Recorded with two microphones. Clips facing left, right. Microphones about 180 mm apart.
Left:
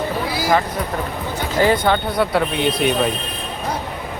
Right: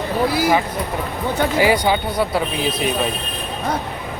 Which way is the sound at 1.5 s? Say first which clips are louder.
Left 2 dB; 10° right (ahead or behind).